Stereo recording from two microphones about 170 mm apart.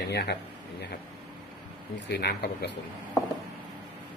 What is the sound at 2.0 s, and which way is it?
Speech, 75° left (ahead or behind).